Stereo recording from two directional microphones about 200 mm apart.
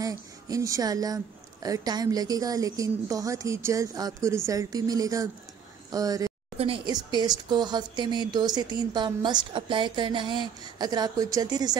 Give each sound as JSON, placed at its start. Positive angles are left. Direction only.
{"t": 0.0, "sound": "speech", "side_deg": -15}